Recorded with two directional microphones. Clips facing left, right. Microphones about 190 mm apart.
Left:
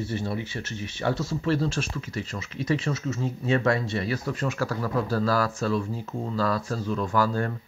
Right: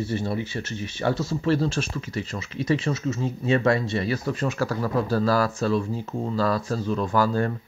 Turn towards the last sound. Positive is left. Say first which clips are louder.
# right 2 dB
turn(degrees=-30)  # may be behind; listen again after turning